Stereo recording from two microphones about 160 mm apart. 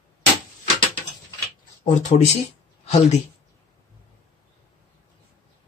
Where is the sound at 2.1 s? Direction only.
45° left (ahead or behind).